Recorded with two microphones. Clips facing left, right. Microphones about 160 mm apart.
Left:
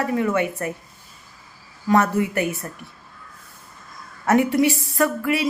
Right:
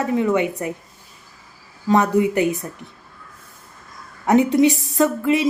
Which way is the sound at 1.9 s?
15° right (ahead or behind).